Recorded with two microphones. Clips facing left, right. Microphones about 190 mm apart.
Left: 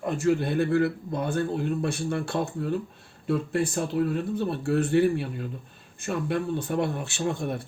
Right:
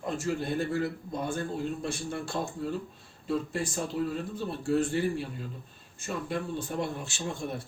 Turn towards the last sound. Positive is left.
turn(degrees=60)  # may be behind; listen again after turning